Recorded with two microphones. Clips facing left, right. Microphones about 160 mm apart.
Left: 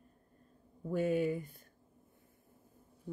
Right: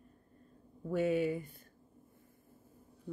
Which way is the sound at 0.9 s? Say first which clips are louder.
Right 1 dB; 45° left (ahead or behind).